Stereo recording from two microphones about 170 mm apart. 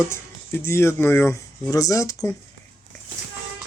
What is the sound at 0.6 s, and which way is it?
Speech, 15° left (ahead or behind).